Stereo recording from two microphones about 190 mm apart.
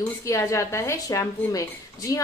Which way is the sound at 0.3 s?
15° left (ahead or behind).